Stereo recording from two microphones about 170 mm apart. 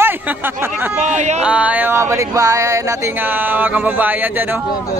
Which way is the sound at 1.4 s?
10° right (ahead or behind).